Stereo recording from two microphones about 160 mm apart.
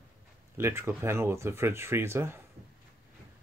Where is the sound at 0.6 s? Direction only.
15° right (ahead or behind).